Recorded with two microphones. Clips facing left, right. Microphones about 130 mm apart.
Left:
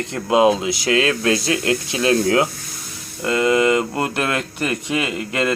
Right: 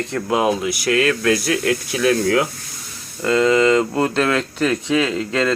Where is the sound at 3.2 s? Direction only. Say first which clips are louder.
Right 2 dB; 10° left (ahead or behind).